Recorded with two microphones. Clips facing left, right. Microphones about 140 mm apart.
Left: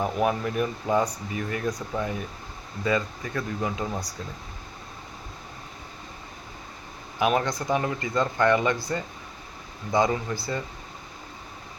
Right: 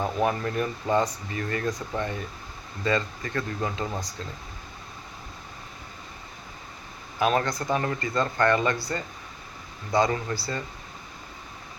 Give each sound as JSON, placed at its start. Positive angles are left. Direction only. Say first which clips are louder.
{"t": 0.0, "sound": "speech", "louder": "left 1 dB", "side_deg": 10}
{"t": 7.2, "sound": "speech", "louder": "even", "side_deg": 15}